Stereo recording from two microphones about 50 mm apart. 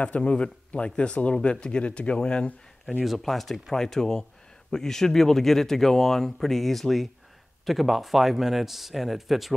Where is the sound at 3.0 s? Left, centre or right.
Centre.